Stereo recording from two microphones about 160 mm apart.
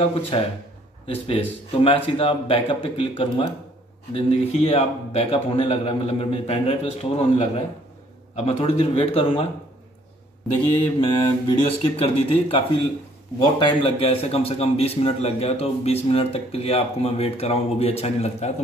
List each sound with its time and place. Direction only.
0.0 s a man's voice: 35° left (ahead or behind)
11.1 s a man's voice: 35° left (ahead or behind)